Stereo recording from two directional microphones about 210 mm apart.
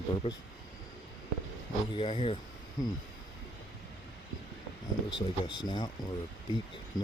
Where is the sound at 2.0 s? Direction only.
25° left (ahead or behind).